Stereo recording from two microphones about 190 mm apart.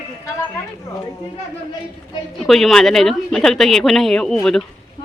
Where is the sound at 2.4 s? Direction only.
Centre (ahead or behind).